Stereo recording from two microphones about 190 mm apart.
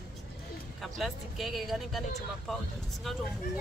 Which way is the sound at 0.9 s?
Centre (ahead or behind).